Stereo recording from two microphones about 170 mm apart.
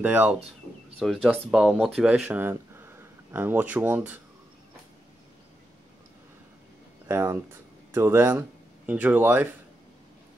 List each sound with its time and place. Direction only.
0.0 s speech: 10° right (ahead or behind)
7.1 s speech: 15° right (ahead or behind)